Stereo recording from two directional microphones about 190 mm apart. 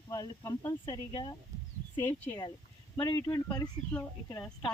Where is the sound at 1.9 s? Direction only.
10° left (ahead or behind).